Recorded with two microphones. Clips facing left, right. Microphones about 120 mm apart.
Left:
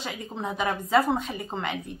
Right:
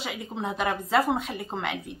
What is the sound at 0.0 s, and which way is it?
Speech, centre (ahead or behind).